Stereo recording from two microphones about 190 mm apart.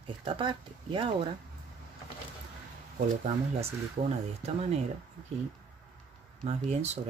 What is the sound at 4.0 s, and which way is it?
Speech, 35° right (ahead or behind).